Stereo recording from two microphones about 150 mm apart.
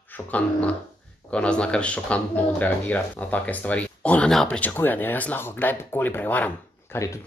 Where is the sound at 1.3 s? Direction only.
5° left (ahead or behind).